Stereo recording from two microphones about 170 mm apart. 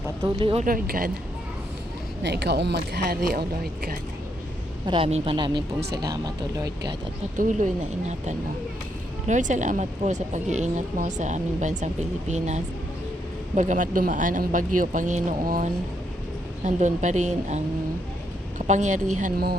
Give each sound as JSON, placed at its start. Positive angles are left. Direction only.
{"t": 0.3, "sound": "speech", "side_deg": -30}
{"t": 0.6, "sound": "speech", "side_deg": -55}
{"t": 2.2, "sound": "speech", "side_deg": -75}
{"t": 4.9, "sound": "speech", "side_deg": -35}
{"t": 7.3, "sound": "speech", "side_deg": -50}
{"t": 18.7, "sound": "speech", "side_deg": -45}